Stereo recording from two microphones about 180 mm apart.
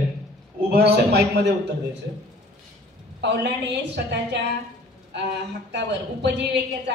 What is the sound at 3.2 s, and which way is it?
A woman's voice, 70° right (ahead or behind).